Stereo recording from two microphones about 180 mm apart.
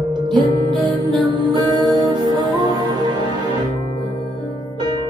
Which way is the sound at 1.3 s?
25° right (ahead or behind).